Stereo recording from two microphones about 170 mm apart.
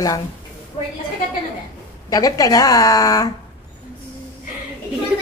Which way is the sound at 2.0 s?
20° left (ahead or behind).